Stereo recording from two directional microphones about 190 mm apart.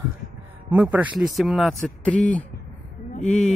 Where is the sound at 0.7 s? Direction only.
10° right (ahead or behind).